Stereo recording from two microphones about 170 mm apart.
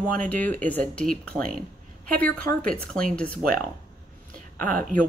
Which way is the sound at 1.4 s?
55° right (ahead or behind).